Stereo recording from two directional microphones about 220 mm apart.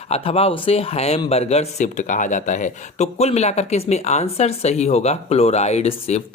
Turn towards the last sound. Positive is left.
turn(degrees=30)  # may be behind; listen again after turning